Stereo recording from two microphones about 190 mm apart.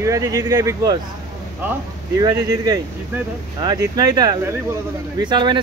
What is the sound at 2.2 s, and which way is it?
Speech, 20° right (ahead or behind).